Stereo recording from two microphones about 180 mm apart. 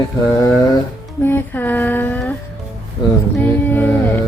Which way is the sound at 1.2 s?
10° left (ahead or behind).